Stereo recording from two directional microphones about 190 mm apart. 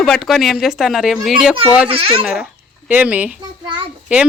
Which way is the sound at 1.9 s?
30° right (ahead or behind).